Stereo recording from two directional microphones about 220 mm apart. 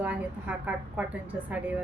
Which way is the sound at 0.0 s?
5° right (ahead or behind).